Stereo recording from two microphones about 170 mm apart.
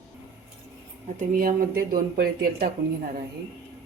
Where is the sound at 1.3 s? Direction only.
55° right (ahead or behind).